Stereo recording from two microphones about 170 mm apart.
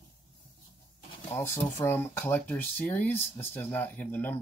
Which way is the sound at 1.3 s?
15° left (ahead or behind).